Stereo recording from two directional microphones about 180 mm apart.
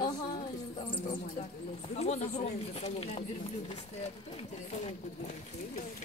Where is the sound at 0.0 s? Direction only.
25° left (ahead or behind).